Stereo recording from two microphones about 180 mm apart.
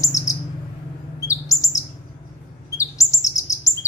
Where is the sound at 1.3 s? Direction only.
15° left (ahead or behind).